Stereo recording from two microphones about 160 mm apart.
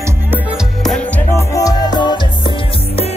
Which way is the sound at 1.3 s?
20° left (ahead or behind).